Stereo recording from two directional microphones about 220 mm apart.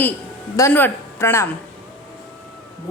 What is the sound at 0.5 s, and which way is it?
Speech, 10° left (ahead or behind).